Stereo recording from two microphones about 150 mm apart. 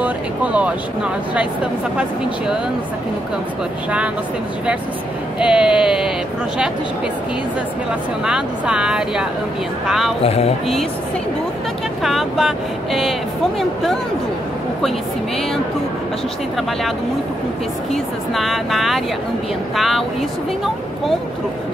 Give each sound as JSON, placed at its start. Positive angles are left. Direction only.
{"t": 0.0, "sound": "speech", "side_deg": -10}
{"t": 2.0, "sound": "speech", "side_deg": -5}
{"t": 5.4, "sound": "speech", "side_deg": -5}
{"t": 8.3, "sound": "speech", "side_deg": -5}
{"t": 12.0, "sound": "speech", "side_deg": 0}
{"t": 17.9, "sound": "speech", "side_deg": 0}